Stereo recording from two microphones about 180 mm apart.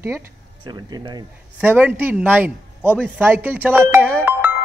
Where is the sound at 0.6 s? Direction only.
25° right (ahead or behind).